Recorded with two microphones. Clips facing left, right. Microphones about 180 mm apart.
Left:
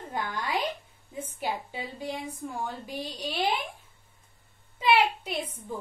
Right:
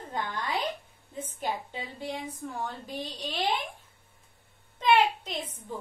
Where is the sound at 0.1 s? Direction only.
10° left (ahead or behind).